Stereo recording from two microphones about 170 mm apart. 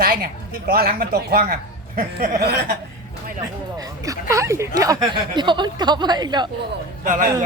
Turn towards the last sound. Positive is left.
turn(degrees=-50)  # may be behind; listen again after turning